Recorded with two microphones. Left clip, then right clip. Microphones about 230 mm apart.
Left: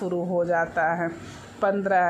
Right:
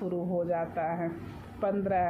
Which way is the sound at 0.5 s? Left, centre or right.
Centre.